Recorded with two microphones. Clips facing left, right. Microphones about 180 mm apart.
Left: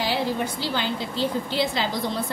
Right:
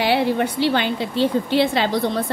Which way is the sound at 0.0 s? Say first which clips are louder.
Right 6 dB; 65° right (ahead or behind).